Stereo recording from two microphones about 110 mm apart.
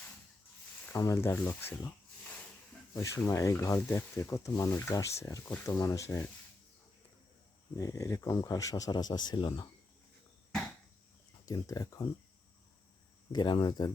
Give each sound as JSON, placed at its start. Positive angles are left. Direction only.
{"t": 0.9, "sound": "speech", "side_deg": 25}
{"t": 2.9, "sound": "speech", "side_deg": 30}
{"t": 7.8, "sound": "speech", "side_deg": 30}
{"t": 11.4, "sound": "speech", "side_deg": 30}
{"t": 13.3, "sound": "speech", "side_deg": 40}